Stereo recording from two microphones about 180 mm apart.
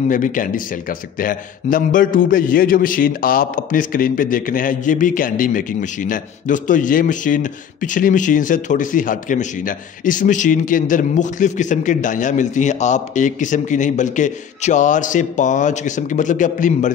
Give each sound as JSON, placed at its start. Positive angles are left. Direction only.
{"t": 0.1, "sound": "a man's voice", "side_deg": 45}